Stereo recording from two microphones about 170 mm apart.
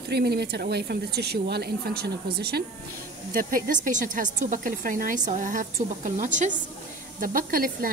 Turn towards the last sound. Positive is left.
turn(degrees=-55)  # may be behind; listen again after turning